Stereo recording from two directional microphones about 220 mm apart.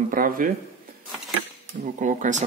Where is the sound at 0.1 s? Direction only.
40° right (ahead or behind).